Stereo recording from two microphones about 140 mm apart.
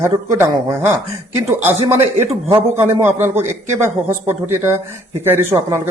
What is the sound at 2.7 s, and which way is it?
A man's voice, 15° right (ahead or behind).